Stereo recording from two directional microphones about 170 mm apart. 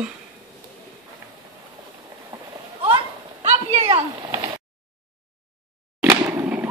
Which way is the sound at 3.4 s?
35° right (ahead or behind).